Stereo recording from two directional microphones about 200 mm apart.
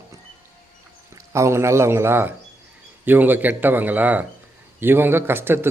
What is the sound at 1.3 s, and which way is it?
A man's voice, 15° right (ahead or behind).